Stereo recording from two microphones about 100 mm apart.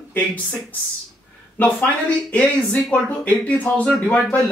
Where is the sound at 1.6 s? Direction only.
20° left (ahead or behind).